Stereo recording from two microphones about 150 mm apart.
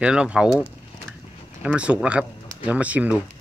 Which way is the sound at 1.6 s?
10° right (ahead or behind).